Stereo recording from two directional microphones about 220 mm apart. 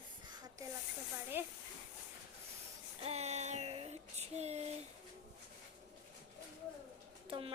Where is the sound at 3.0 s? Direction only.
30° right (ahead or behind).